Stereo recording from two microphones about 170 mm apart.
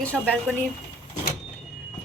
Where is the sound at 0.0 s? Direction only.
5° left (ahead or behind).